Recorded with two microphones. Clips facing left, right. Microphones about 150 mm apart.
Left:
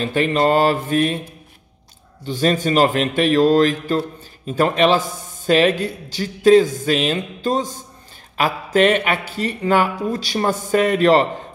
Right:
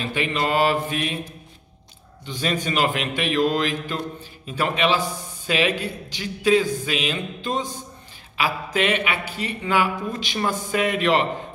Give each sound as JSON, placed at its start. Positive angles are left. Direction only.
{"t": 0.0, "sound": "speech", "side_deg": 40}
{"t": 2.2, "sound": "speech", "side_deg": 40}